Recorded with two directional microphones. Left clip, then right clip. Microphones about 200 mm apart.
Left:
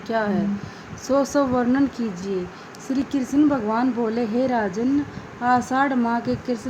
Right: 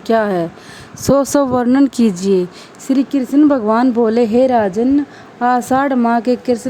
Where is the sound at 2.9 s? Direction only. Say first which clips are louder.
Right 9 dB; 45° right (ahead or behind).